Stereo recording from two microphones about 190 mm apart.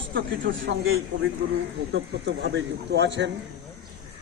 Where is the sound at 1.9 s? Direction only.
65° right (ahead or behind).